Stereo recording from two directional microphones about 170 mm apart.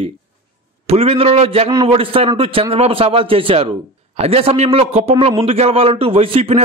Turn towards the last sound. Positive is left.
turn(degrees=-35)  # may be behind; listen again after turning